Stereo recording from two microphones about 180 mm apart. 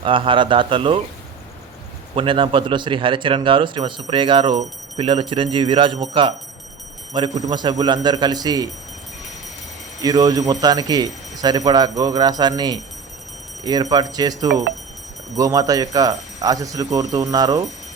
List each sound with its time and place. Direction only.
0.0 s speech: 30° right (ahead or behind)
2.1 s speech: 30° right (ahead or behind)
7.4 s speech: 25° right (ahead or behind)
10.0 s speech: 20° right (ahead or behind)